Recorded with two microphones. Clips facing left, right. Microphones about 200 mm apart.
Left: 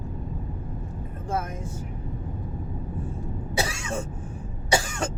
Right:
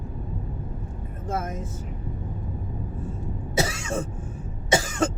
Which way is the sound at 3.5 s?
25° right (ahead or behind).